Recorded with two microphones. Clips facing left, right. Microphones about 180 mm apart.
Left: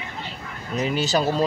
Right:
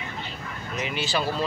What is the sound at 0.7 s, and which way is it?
Speech, 40° left (ahead or behind).